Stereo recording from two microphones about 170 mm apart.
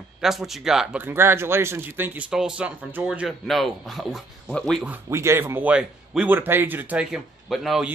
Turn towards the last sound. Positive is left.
turn(degrees=0)  # may be behind; listen again after turning